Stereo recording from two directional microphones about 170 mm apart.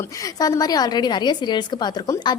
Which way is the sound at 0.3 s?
20° left (ahead or behind).